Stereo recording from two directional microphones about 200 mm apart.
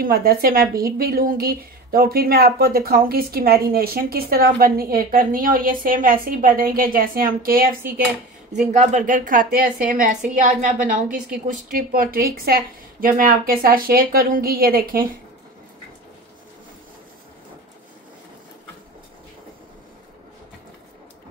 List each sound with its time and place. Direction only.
0.0 s a woman's voice: 50° right (ahead or behind)